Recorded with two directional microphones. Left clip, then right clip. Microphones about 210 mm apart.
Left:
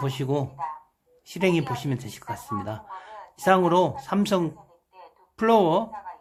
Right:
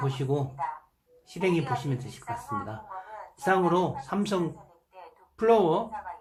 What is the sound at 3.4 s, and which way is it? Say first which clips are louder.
Speech: left 5 dB; 40° left (ahead or behind).